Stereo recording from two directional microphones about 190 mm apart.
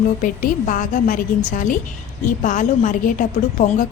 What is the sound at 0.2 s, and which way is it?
A woman's voice, 45° left (ahead or behind).